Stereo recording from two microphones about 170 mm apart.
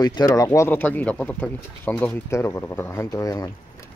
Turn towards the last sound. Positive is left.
turn(degrees=20)  # may be behind; listen again after turning